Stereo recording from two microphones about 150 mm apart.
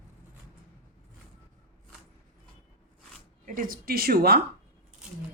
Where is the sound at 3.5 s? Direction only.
70° right (ahead or behind); by 4.4 s 90° right.